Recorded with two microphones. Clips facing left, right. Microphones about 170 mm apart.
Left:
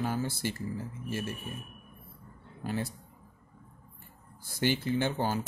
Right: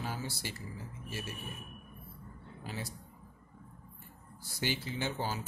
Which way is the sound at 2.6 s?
55° left (ahead or behind).